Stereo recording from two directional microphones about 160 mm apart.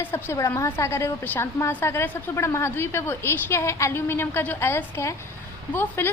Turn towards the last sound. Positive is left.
turn(degrees=15)  # may be behind; listen again after turning